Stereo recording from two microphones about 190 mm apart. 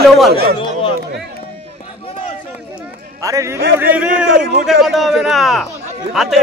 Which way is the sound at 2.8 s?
15° right (ahead or behind).